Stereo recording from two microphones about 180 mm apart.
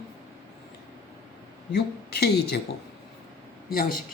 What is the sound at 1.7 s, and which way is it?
Speech, 65° left (ahead or behind).